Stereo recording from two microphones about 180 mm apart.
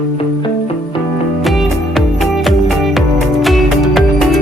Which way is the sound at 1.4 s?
Centre (ahead or behind).